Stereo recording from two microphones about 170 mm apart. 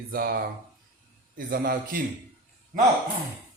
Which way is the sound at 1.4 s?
55° right (ahead or behind).